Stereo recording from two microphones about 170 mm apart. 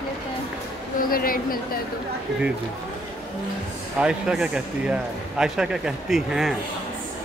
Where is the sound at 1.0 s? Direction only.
60° left (ahead or behind).